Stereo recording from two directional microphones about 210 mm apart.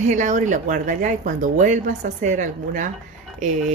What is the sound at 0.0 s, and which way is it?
Speech, 35° right (ahead or behind).